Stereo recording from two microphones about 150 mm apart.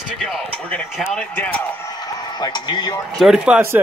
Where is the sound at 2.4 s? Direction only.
25° left (ahead or behind).